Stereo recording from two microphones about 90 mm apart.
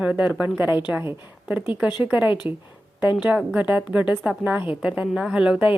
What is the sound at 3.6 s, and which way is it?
A woman's voice, 15° right (ahead or behind).